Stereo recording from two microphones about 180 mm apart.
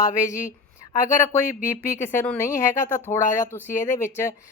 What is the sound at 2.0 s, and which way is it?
Speech, 10° left (ahead or behind).